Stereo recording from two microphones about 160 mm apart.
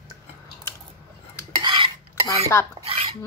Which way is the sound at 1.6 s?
30° right (ahead or behind).